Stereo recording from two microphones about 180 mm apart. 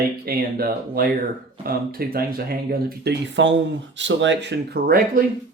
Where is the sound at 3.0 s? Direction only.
80° right.